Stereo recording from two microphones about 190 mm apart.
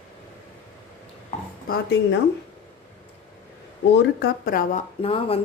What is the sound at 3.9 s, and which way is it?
Speech, 60° left (ahead or behind).